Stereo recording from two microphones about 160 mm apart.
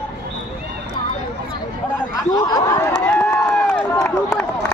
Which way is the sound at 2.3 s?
20° left (ahead or behind).